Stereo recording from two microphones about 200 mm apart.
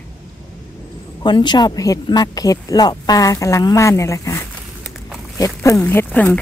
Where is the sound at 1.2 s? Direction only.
20° left (ahead or behind).